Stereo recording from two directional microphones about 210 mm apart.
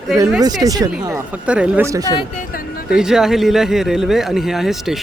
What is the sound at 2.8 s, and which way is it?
Speech, 5° right (ahead or behind).